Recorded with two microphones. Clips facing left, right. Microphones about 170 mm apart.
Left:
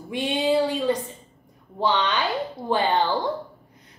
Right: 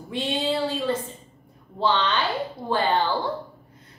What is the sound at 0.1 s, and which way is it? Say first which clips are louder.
A woman's voice: left 4 dB; 15° left (ahead or behind).